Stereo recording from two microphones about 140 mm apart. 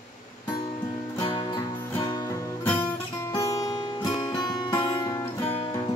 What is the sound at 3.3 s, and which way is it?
Music, 25° left (ahead or behind).